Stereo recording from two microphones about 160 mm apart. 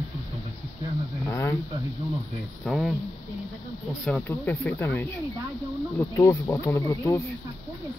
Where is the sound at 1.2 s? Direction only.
15° left (ahead or behind).